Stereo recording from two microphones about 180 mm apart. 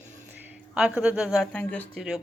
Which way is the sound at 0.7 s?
5° right (ahead or behind).